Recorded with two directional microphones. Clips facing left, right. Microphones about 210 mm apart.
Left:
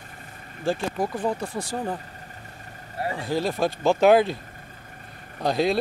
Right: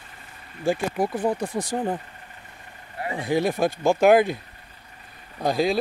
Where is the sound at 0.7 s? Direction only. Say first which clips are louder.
Right 2 dB; 10° right (ahead or behind).